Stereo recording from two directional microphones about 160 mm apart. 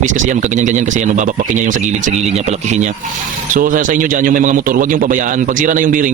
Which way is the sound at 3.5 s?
55° right (ahead or behind).